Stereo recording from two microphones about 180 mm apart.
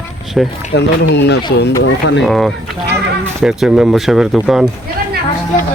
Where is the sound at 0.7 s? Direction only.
70° left (ahead or behind).